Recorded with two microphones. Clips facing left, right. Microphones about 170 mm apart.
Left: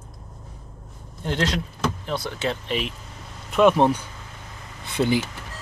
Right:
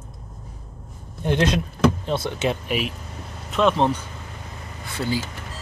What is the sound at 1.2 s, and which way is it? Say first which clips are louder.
Speech: right 4 dB; 20° right (ahead or behind).